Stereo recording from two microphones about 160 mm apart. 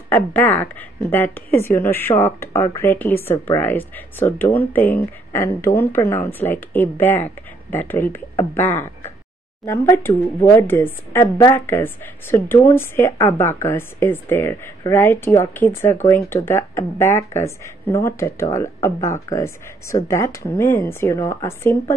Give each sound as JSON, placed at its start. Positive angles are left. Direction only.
{"t": 0.1, "sound": "a woman's voice", "side_deg": 10}